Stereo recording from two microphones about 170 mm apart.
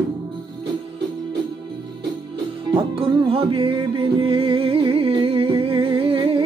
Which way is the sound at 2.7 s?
30° right (ahead or behind).